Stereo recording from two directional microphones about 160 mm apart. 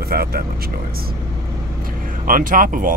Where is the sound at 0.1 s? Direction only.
70° right (ahead or behind).